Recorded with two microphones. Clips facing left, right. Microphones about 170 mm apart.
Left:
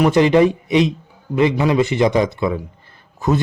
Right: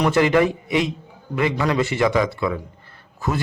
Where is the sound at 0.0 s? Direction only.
20° left (ahead or behind).